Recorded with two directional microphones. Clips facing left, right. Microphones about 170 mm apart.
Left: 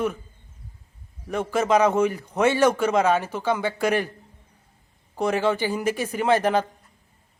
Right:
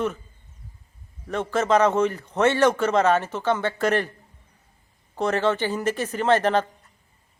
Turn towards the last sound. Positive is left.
turn(degrees=10)  # may be behind; listen again after turning